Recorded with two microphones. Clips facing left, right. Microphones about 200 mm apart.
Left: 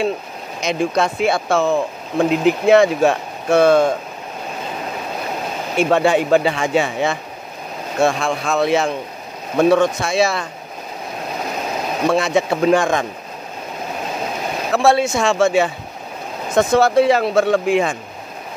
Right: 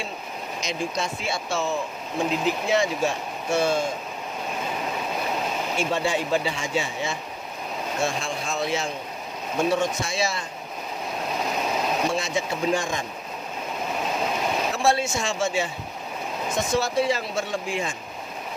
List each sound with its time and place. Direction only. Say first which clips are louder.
0.6 s speech: left 11 dB; 60° left (ahead or behind)
5.8 s speech: left 11 dB; 60° left (ahead or behind)
12.1 s speech: left 10 dB; 60° left (ahead or behind)
14.7 s speech: left 11 dB; 65° left (ahead or behind)